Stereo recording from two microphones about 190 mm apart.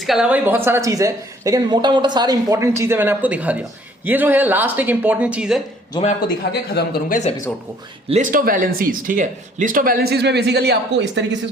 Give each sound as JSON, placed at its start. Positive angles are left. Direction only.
{"t": 0.0, "sound": "speech", "side_deg": 0}
{"t": 5.9, "sound": "a man's voice", "side_deg": 35}
{"t": 6.2, "sound": "speech", "side_deg": 55}
{"t": 8.1, "sound": "speech", "side_deg": -45}